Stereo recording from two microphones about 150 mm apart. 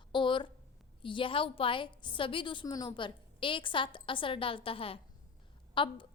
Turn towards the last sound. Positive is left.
turn(degrees=35)  # may be behind; listen again after turning